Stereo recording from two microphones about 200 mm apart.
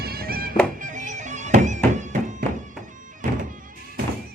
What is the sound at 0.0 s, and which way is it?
Music, 50° right (ahead or behind).